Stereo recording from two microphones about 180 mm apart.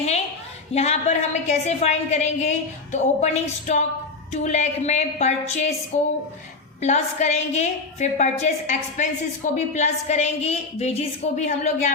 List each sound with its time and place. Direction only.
0.7 s a woman's voice: 35° left (ahead or behind)
6.8 s a woman's voice: 40° left (ahead or behind)